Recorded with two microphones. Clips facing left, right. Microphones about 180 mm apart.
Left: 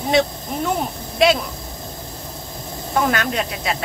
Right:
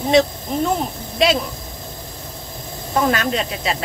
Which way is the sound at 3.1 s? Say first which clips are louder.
Right 1 dB; 60° left (ahead or behind).